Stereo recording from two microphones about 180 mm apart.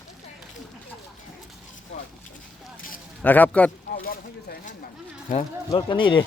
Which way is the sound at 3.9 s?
55° left (ahead or behind).